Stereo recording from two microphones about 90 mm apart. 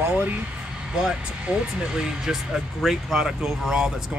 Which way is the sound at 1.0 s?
10° right (ahead or behind).